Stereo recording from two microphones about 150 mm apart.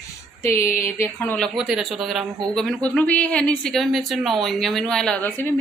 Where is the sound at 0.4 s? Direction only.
15° left (ahead or behind).